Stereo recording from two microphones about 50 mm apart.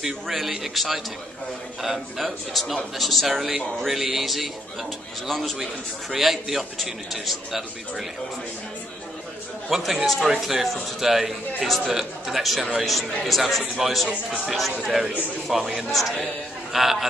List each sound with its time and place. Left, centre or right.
0.0 s a man's voice: centre
9.8 s a man's voice: centre
14.0 s speech: centre
14.9 s a man's voice: centre